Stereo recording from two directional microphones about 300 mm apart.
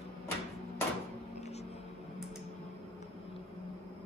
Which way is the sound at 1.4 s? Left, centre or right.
Left.